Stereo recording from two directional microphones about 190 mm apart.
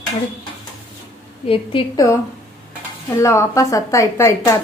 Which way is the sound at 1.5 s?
30° left (ahead or behind).